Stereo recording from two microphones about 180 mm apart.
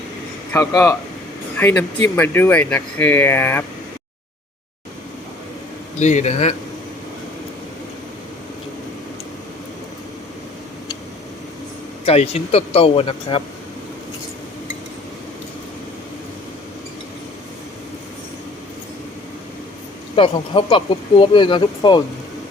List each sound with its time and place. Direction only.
0.5 s speech: 15° left (ahead or behind)
6.0 s speech: 40° left (ahead or behind)
12.0 s speech: 35° left (ahead or behind)
20.1 s speech: 30° left (ahead or behind)